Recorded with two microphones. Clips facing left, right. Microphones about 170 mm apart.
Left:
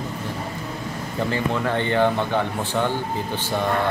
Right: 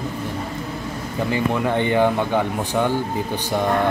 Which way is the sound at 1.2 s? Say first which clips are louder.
Right 3 dB; 15° right (ahead or behind).